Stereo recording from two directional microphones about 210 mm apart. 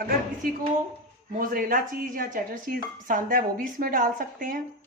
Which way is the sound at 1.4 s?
40° right (ahead or behind).